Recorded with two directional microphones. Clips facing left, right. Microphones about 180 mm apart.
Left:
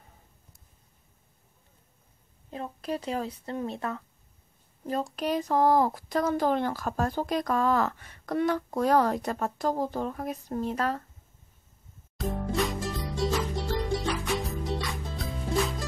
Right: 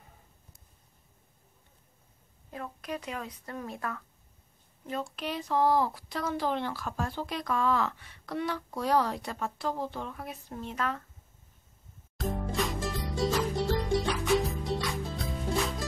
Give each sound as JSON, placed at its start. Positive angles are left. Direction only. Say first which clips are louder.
{"t": 2.5, "sound": "speech", "louder": "left 4 dB", "side_deg": 30}
{"t": 4.8, "sound": "speech", "louder": "left 6 dB", "side_deg": 40}
{"t": 12.2, "sound": "music", "louder": "left 3 dB", "side_deg": 0}